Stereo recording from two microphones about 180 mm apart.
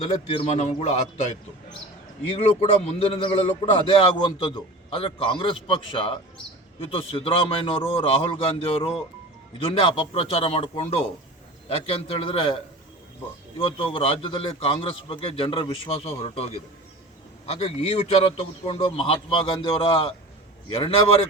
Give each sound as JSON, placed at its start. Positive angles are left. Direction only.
{"t": 0.0, "sound": "a man's voice", "side_deg": 30}
{"t": 2.4, "sound": "a man's voice", "side_deg": 35}